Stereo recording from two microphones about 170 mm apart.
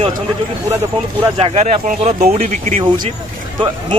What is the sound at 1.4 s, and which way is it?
Speech, 40° right (ahead or behind).